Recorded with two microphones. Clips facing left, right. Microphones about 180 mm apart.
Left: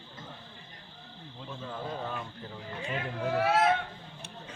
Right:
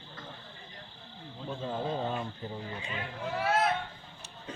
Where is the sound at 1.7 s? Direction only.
25° right (ahead or behind).